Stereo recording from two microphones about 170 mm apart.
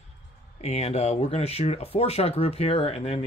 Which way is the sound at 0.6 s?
40° left (ahead or behind).